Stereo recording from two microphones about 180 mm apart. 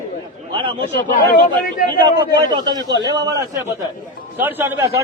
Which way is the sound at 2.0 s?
25° right (ahead or behind).